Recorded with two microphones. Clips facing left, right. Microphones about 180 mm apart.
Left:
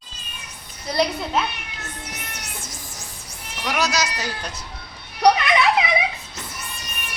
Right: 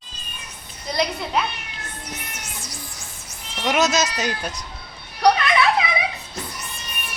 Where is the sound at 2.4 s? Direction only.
60° left (ahead or behind).